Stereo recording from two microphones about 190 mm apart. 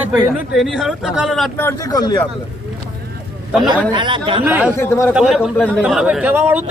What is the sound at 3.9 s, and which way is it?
Speech, 25° right (ahead or behind).